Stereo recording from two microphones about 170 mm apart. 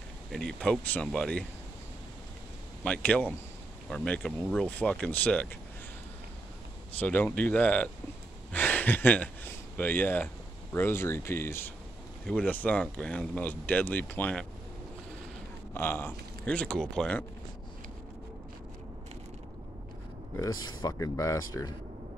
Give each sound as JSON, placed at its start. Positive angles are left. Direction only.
{"t": 0.3, "sound": "speech", "side_deg": 5}
{"t": 2.8, "sound": "speech", "side_deg": 5}
{"t": 7.0, "sound": "speech", "side_deg": 10}
{"t": 15.7, "sound": "speech", "side_deg": 15}
{"t": 20.3, "sound": "speech", "side_deg": 20}